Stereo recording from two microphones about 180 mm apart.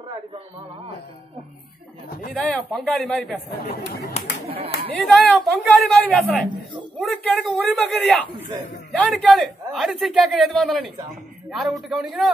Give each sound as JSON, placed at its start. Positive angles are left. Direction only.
{"t": 2.3, "sound": "a man's voice", "side_deg": 5}
{"t": 3.4, "sound": "speech", "side_deg": 65}
{"t": 4.5, "sound": "chatter", "side_deg": -35}
{"t": 5.0, "sound": "a man's voice", "side_deg": 5}